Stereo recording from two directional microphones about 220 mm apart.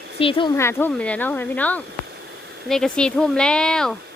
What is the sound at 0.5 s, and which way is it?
Speech, 10° left (ahead or behind).